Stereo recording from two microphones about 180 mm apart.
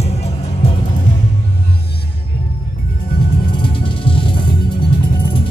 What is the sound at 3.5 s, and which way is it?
Music, 30° left (ahead or behind).